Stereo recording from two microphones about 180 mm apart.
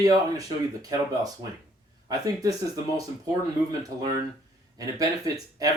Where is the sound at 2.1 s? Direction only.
20° right (ahead or behind).